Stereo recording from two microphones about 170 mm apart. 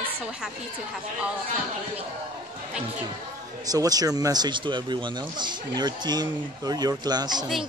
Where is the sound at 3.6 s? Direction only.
20° right (ahead or behind).